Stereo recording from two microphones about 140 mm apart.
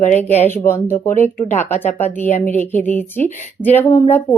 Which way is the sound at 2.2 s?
70° left (ahead or behind).